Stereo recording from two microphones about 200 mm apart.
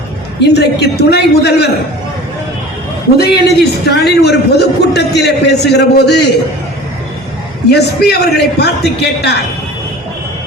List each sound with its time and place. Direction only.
0.5 s a man's voice: 55° left (ahead or behind)
3.2 s a man's voice: 50° left (ahead or behind)
7.7 s a man's voice: 55° left (ahead or behind)